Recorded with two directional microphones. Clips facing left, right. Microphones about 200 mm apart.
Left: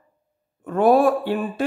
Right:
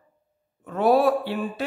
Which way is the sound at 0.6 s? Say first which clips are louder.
Left 3 dB; 50° left (ahead or behind).